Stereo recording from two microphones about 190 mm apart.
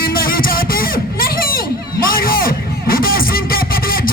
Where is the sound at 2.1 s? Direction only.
50° left (ahead or behind).